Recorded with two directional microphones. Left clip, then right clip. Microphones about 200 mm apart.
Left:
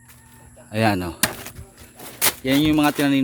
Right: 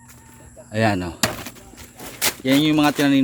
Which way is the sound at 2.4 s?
10° left (ahead or behind).